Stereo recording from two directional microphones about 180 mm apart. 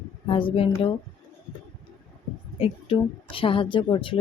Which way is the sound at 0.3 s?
30° left (ahead or behind).